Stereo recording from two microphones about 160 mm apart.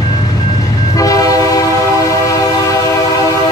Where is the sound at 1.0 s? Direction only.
20° left (ahead or behind).